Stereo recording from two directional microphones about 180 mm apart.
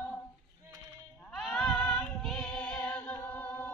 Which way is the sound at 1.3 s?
Centre (ahead or behind).